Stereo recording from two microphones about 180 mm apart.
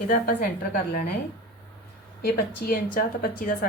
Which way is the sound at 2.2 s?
55° left (ahead or behind).